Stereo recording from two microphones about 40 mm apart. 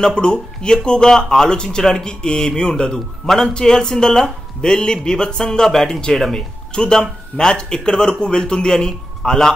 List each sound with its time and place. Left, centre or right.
0.0 s speech: left
6.7 s speech: left